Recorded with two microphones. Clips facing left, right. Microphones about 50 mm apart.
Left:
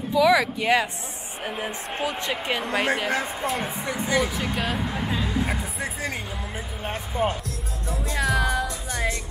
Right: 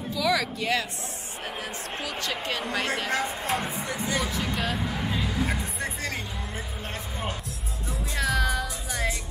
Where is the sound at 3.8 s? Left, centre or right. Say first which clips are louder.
Left 3 dB; left.